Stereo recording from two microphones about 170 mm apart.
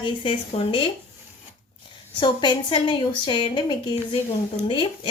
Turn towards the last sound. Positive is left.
turn(degrees=30)  # may be behind; listen again after turning